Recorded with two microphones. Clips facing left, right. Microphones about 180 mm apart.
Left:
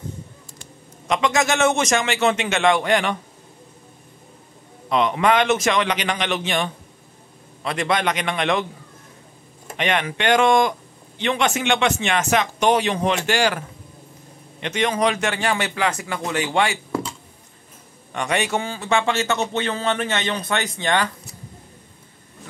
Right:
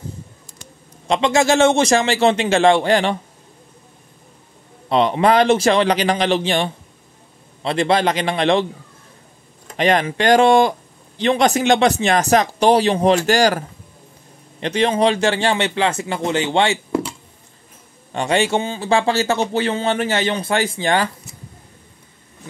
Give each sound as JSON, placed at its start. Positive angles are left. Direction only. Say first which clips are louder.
{"t": 1.0, "sound": "speech", "louder": "right 4 dB", "side_deg": -30}
{"t": 4.8, "sound": "speech", "louder": "right 3 dB", "side_deg": -30}
{"t": 9.8, "sound": "speech", "louder": "right 6 dB", "side_deg": -35}
{"t": 18.1, "sound": "speech", "louder": "right 5 dB", "side_deg": -30}